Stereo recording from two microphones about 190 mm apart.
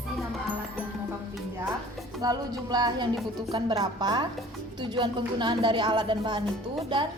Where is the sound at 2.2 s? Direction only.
20° right (ahead or behind).